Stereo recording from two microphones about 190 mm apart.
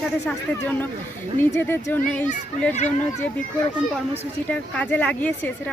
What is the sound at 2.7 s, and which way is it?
Speech, 40° left (ahead or behind).